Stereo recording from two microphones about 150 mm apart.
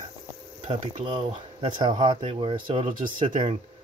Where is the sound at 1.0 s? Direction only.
35° right (ahead or behind).